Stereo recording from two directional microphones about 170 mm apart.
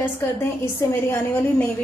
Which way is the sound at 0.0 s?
15° left (ahead or behind).